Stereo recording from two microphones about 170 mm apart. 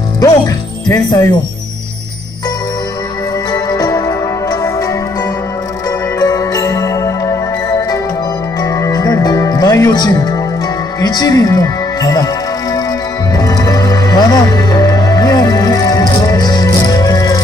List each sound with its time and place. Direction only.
0.8 s speech: 20° left (ahead or behind)
3.5 s music: 20° left (ahead or behind)
11.0 s speech: 25° left (ahead or behind)
13.3 s music: 20° left (ahead or behind)